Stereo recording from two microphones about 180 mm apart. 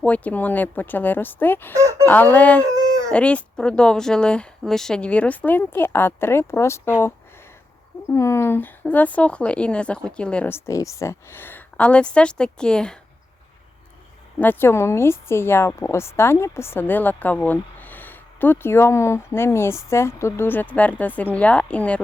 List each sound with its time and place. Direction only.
0.0 s a woman's voice: 10° left (ahead or behind)
1.7 s speech: 15° right (ahead or behind)
2.0 s a woman's voice: 10° left (ahead or behind)
8.1 s a woman's voice: 15° left (ahead or behind)
14.3 s a woman's voice: 10° left (ahead or behind)